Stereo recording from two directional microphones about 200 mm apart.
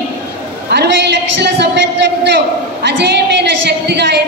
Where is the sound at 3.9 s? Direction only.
55° right (ahead or behind).